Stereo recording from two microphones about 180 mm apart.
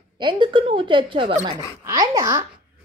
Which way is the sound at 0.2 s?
25° right (ahead or behind).